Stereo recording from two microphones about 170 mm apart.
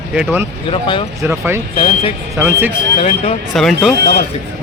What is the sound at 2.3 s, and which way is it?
Speech, 15° right (ahead or behind).